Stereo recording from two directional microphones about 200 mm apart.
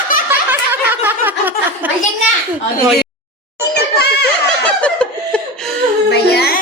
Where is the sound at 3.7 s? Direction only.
55° left (ahead or behind).